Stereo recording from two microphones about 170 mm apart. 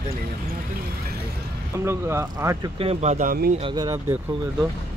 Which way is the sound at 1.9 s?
15° right (ahead or behind).